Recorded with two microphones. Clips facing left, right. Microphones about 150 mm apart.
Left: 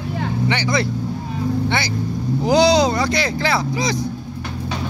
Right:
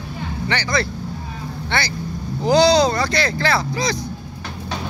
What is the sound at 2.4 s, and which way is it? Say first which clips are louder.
Speech: even; 15° left (ahead or behind).